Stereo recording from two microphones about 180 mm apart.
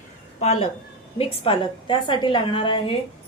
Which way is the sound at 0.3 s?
35° left (ahead or behind).